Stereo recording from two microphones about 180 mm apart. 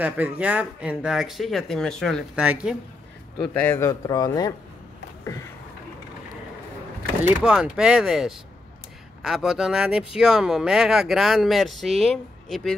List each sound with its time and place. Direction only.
0.0 s speech: 10° right (ahead or behind)
3.3 s a man's voice: 10° left (ahead or behind)
4.1 s speech: 20° left (ahead or behind)
7.4 s speech: 5° right (ahead or behind)